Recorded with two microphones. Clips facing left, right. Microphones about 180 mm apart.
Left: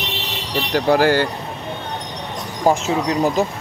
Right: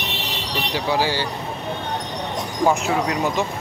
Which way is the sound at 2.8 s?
35° left (ahead or behind).